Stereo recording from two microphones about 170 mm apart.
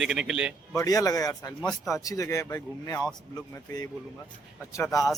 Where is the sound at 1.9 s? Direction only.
20° left (ahead or behind).